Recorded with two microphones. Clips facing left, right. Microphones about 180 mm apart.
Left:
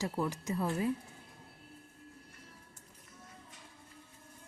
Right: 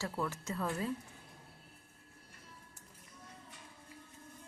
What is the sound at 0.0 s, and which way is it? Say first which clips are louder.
Speech: left 3 dB; 15° left (ahead or behind).